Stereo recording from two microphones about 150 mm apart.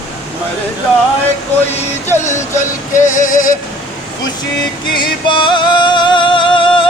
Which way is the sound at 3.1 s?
60° left (ahead or behind).